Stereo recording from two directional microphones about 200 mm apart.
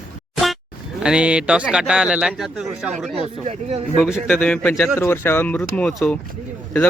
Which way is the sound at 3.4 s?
35° right (ahead or behind).